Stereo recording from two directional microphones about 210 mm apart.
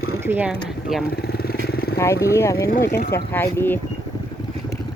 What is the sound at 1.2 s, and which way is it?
Vehicle, 45° left (ahead or behind).